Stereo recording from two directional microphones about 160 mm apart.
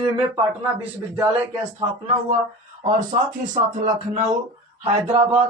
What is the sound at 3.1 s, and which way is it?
Speech, 55° right (ahead or behind).